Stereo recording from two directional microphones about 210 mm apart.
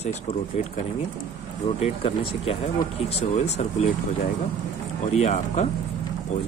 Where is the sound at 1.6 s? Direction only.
30° left (ahead or behind).